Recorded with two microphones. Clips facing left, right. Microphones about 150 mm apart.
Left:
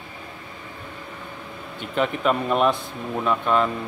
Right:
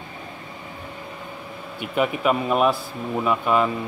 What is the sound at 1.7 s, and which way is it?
Speech, 10° right (ahead or behind).